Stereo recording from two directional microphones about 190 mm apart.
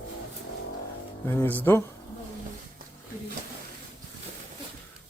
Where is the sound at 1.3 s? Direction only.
10° left (ahead or behind).